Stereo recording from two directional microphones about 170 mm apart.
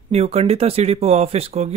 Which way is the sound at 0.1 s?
35° right (ahead or behind).